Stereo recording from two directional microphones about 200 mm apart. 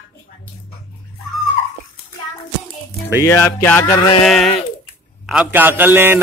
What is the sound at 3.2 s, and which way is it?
Speech, 15° left (ahead or behind).